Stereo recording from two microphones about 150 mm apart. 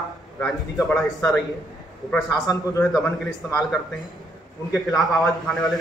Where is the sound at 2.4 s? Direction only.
25° left (ahead or behind).